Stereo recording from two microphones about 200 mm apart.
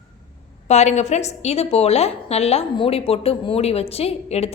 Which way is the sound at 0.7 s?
35° left (ahead or behind).